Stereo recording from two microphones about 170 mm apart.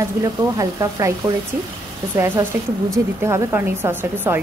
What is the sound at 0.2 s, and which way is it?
A woman's voice, 20° right (ahead or behind).